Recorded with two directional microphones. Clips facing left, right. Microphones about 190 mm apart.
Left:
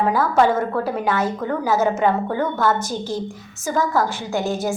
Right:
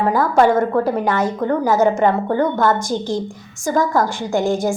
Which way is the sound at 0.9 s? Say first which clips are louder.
Right 3 dB; 15° right (ahead or behind).